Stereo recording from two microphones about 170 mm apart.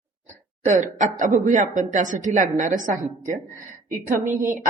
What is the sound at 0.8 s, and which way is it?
Speech, 50° right (ahead or behind).